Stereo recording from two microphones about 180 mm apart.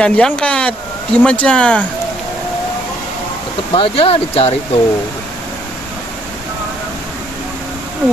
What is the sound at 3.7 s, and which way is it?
Speech, 30° left (ahead or behind).